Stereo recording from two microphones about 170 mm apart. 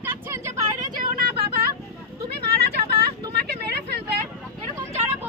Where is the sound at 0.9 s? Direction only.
60° right (ahead or behind).